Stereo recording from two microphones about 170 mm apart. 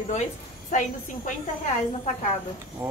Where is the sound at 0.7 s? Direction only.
50° left (ahead or behind).